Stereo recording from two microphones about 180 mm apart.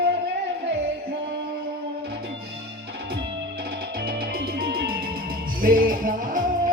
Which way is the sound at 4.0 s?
60° right (ahead or behind).